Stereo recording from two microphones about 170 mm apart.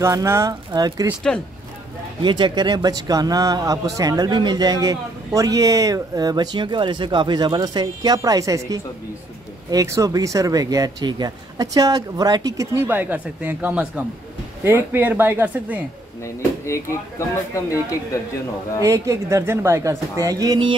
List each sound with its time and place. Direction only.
0.0 s speech: 15° right (ahead or behind)
2.2 s a woman's voice: 25° right (ahead or behind)
16.6 s speech: 15° left (ahead or behind)
18.8 s a woman's voice: 15° right (ahead or behind)